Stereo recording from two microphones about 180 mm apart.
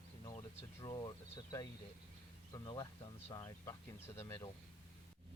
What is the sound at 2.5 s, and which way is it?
Speech, 25° left (ahead or behind).